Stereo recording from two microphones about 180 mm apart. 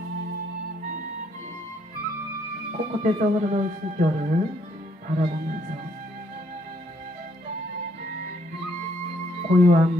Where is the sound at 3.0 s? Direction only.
40° right (ahead or behind).